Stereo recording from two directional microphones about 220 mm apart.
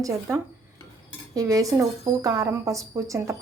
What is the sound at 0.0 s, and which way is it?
Speech, 15° right (ahead or behind).